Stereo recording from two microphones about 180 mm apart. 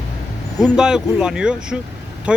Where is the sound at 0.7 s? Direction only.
5° right (ahead or behind).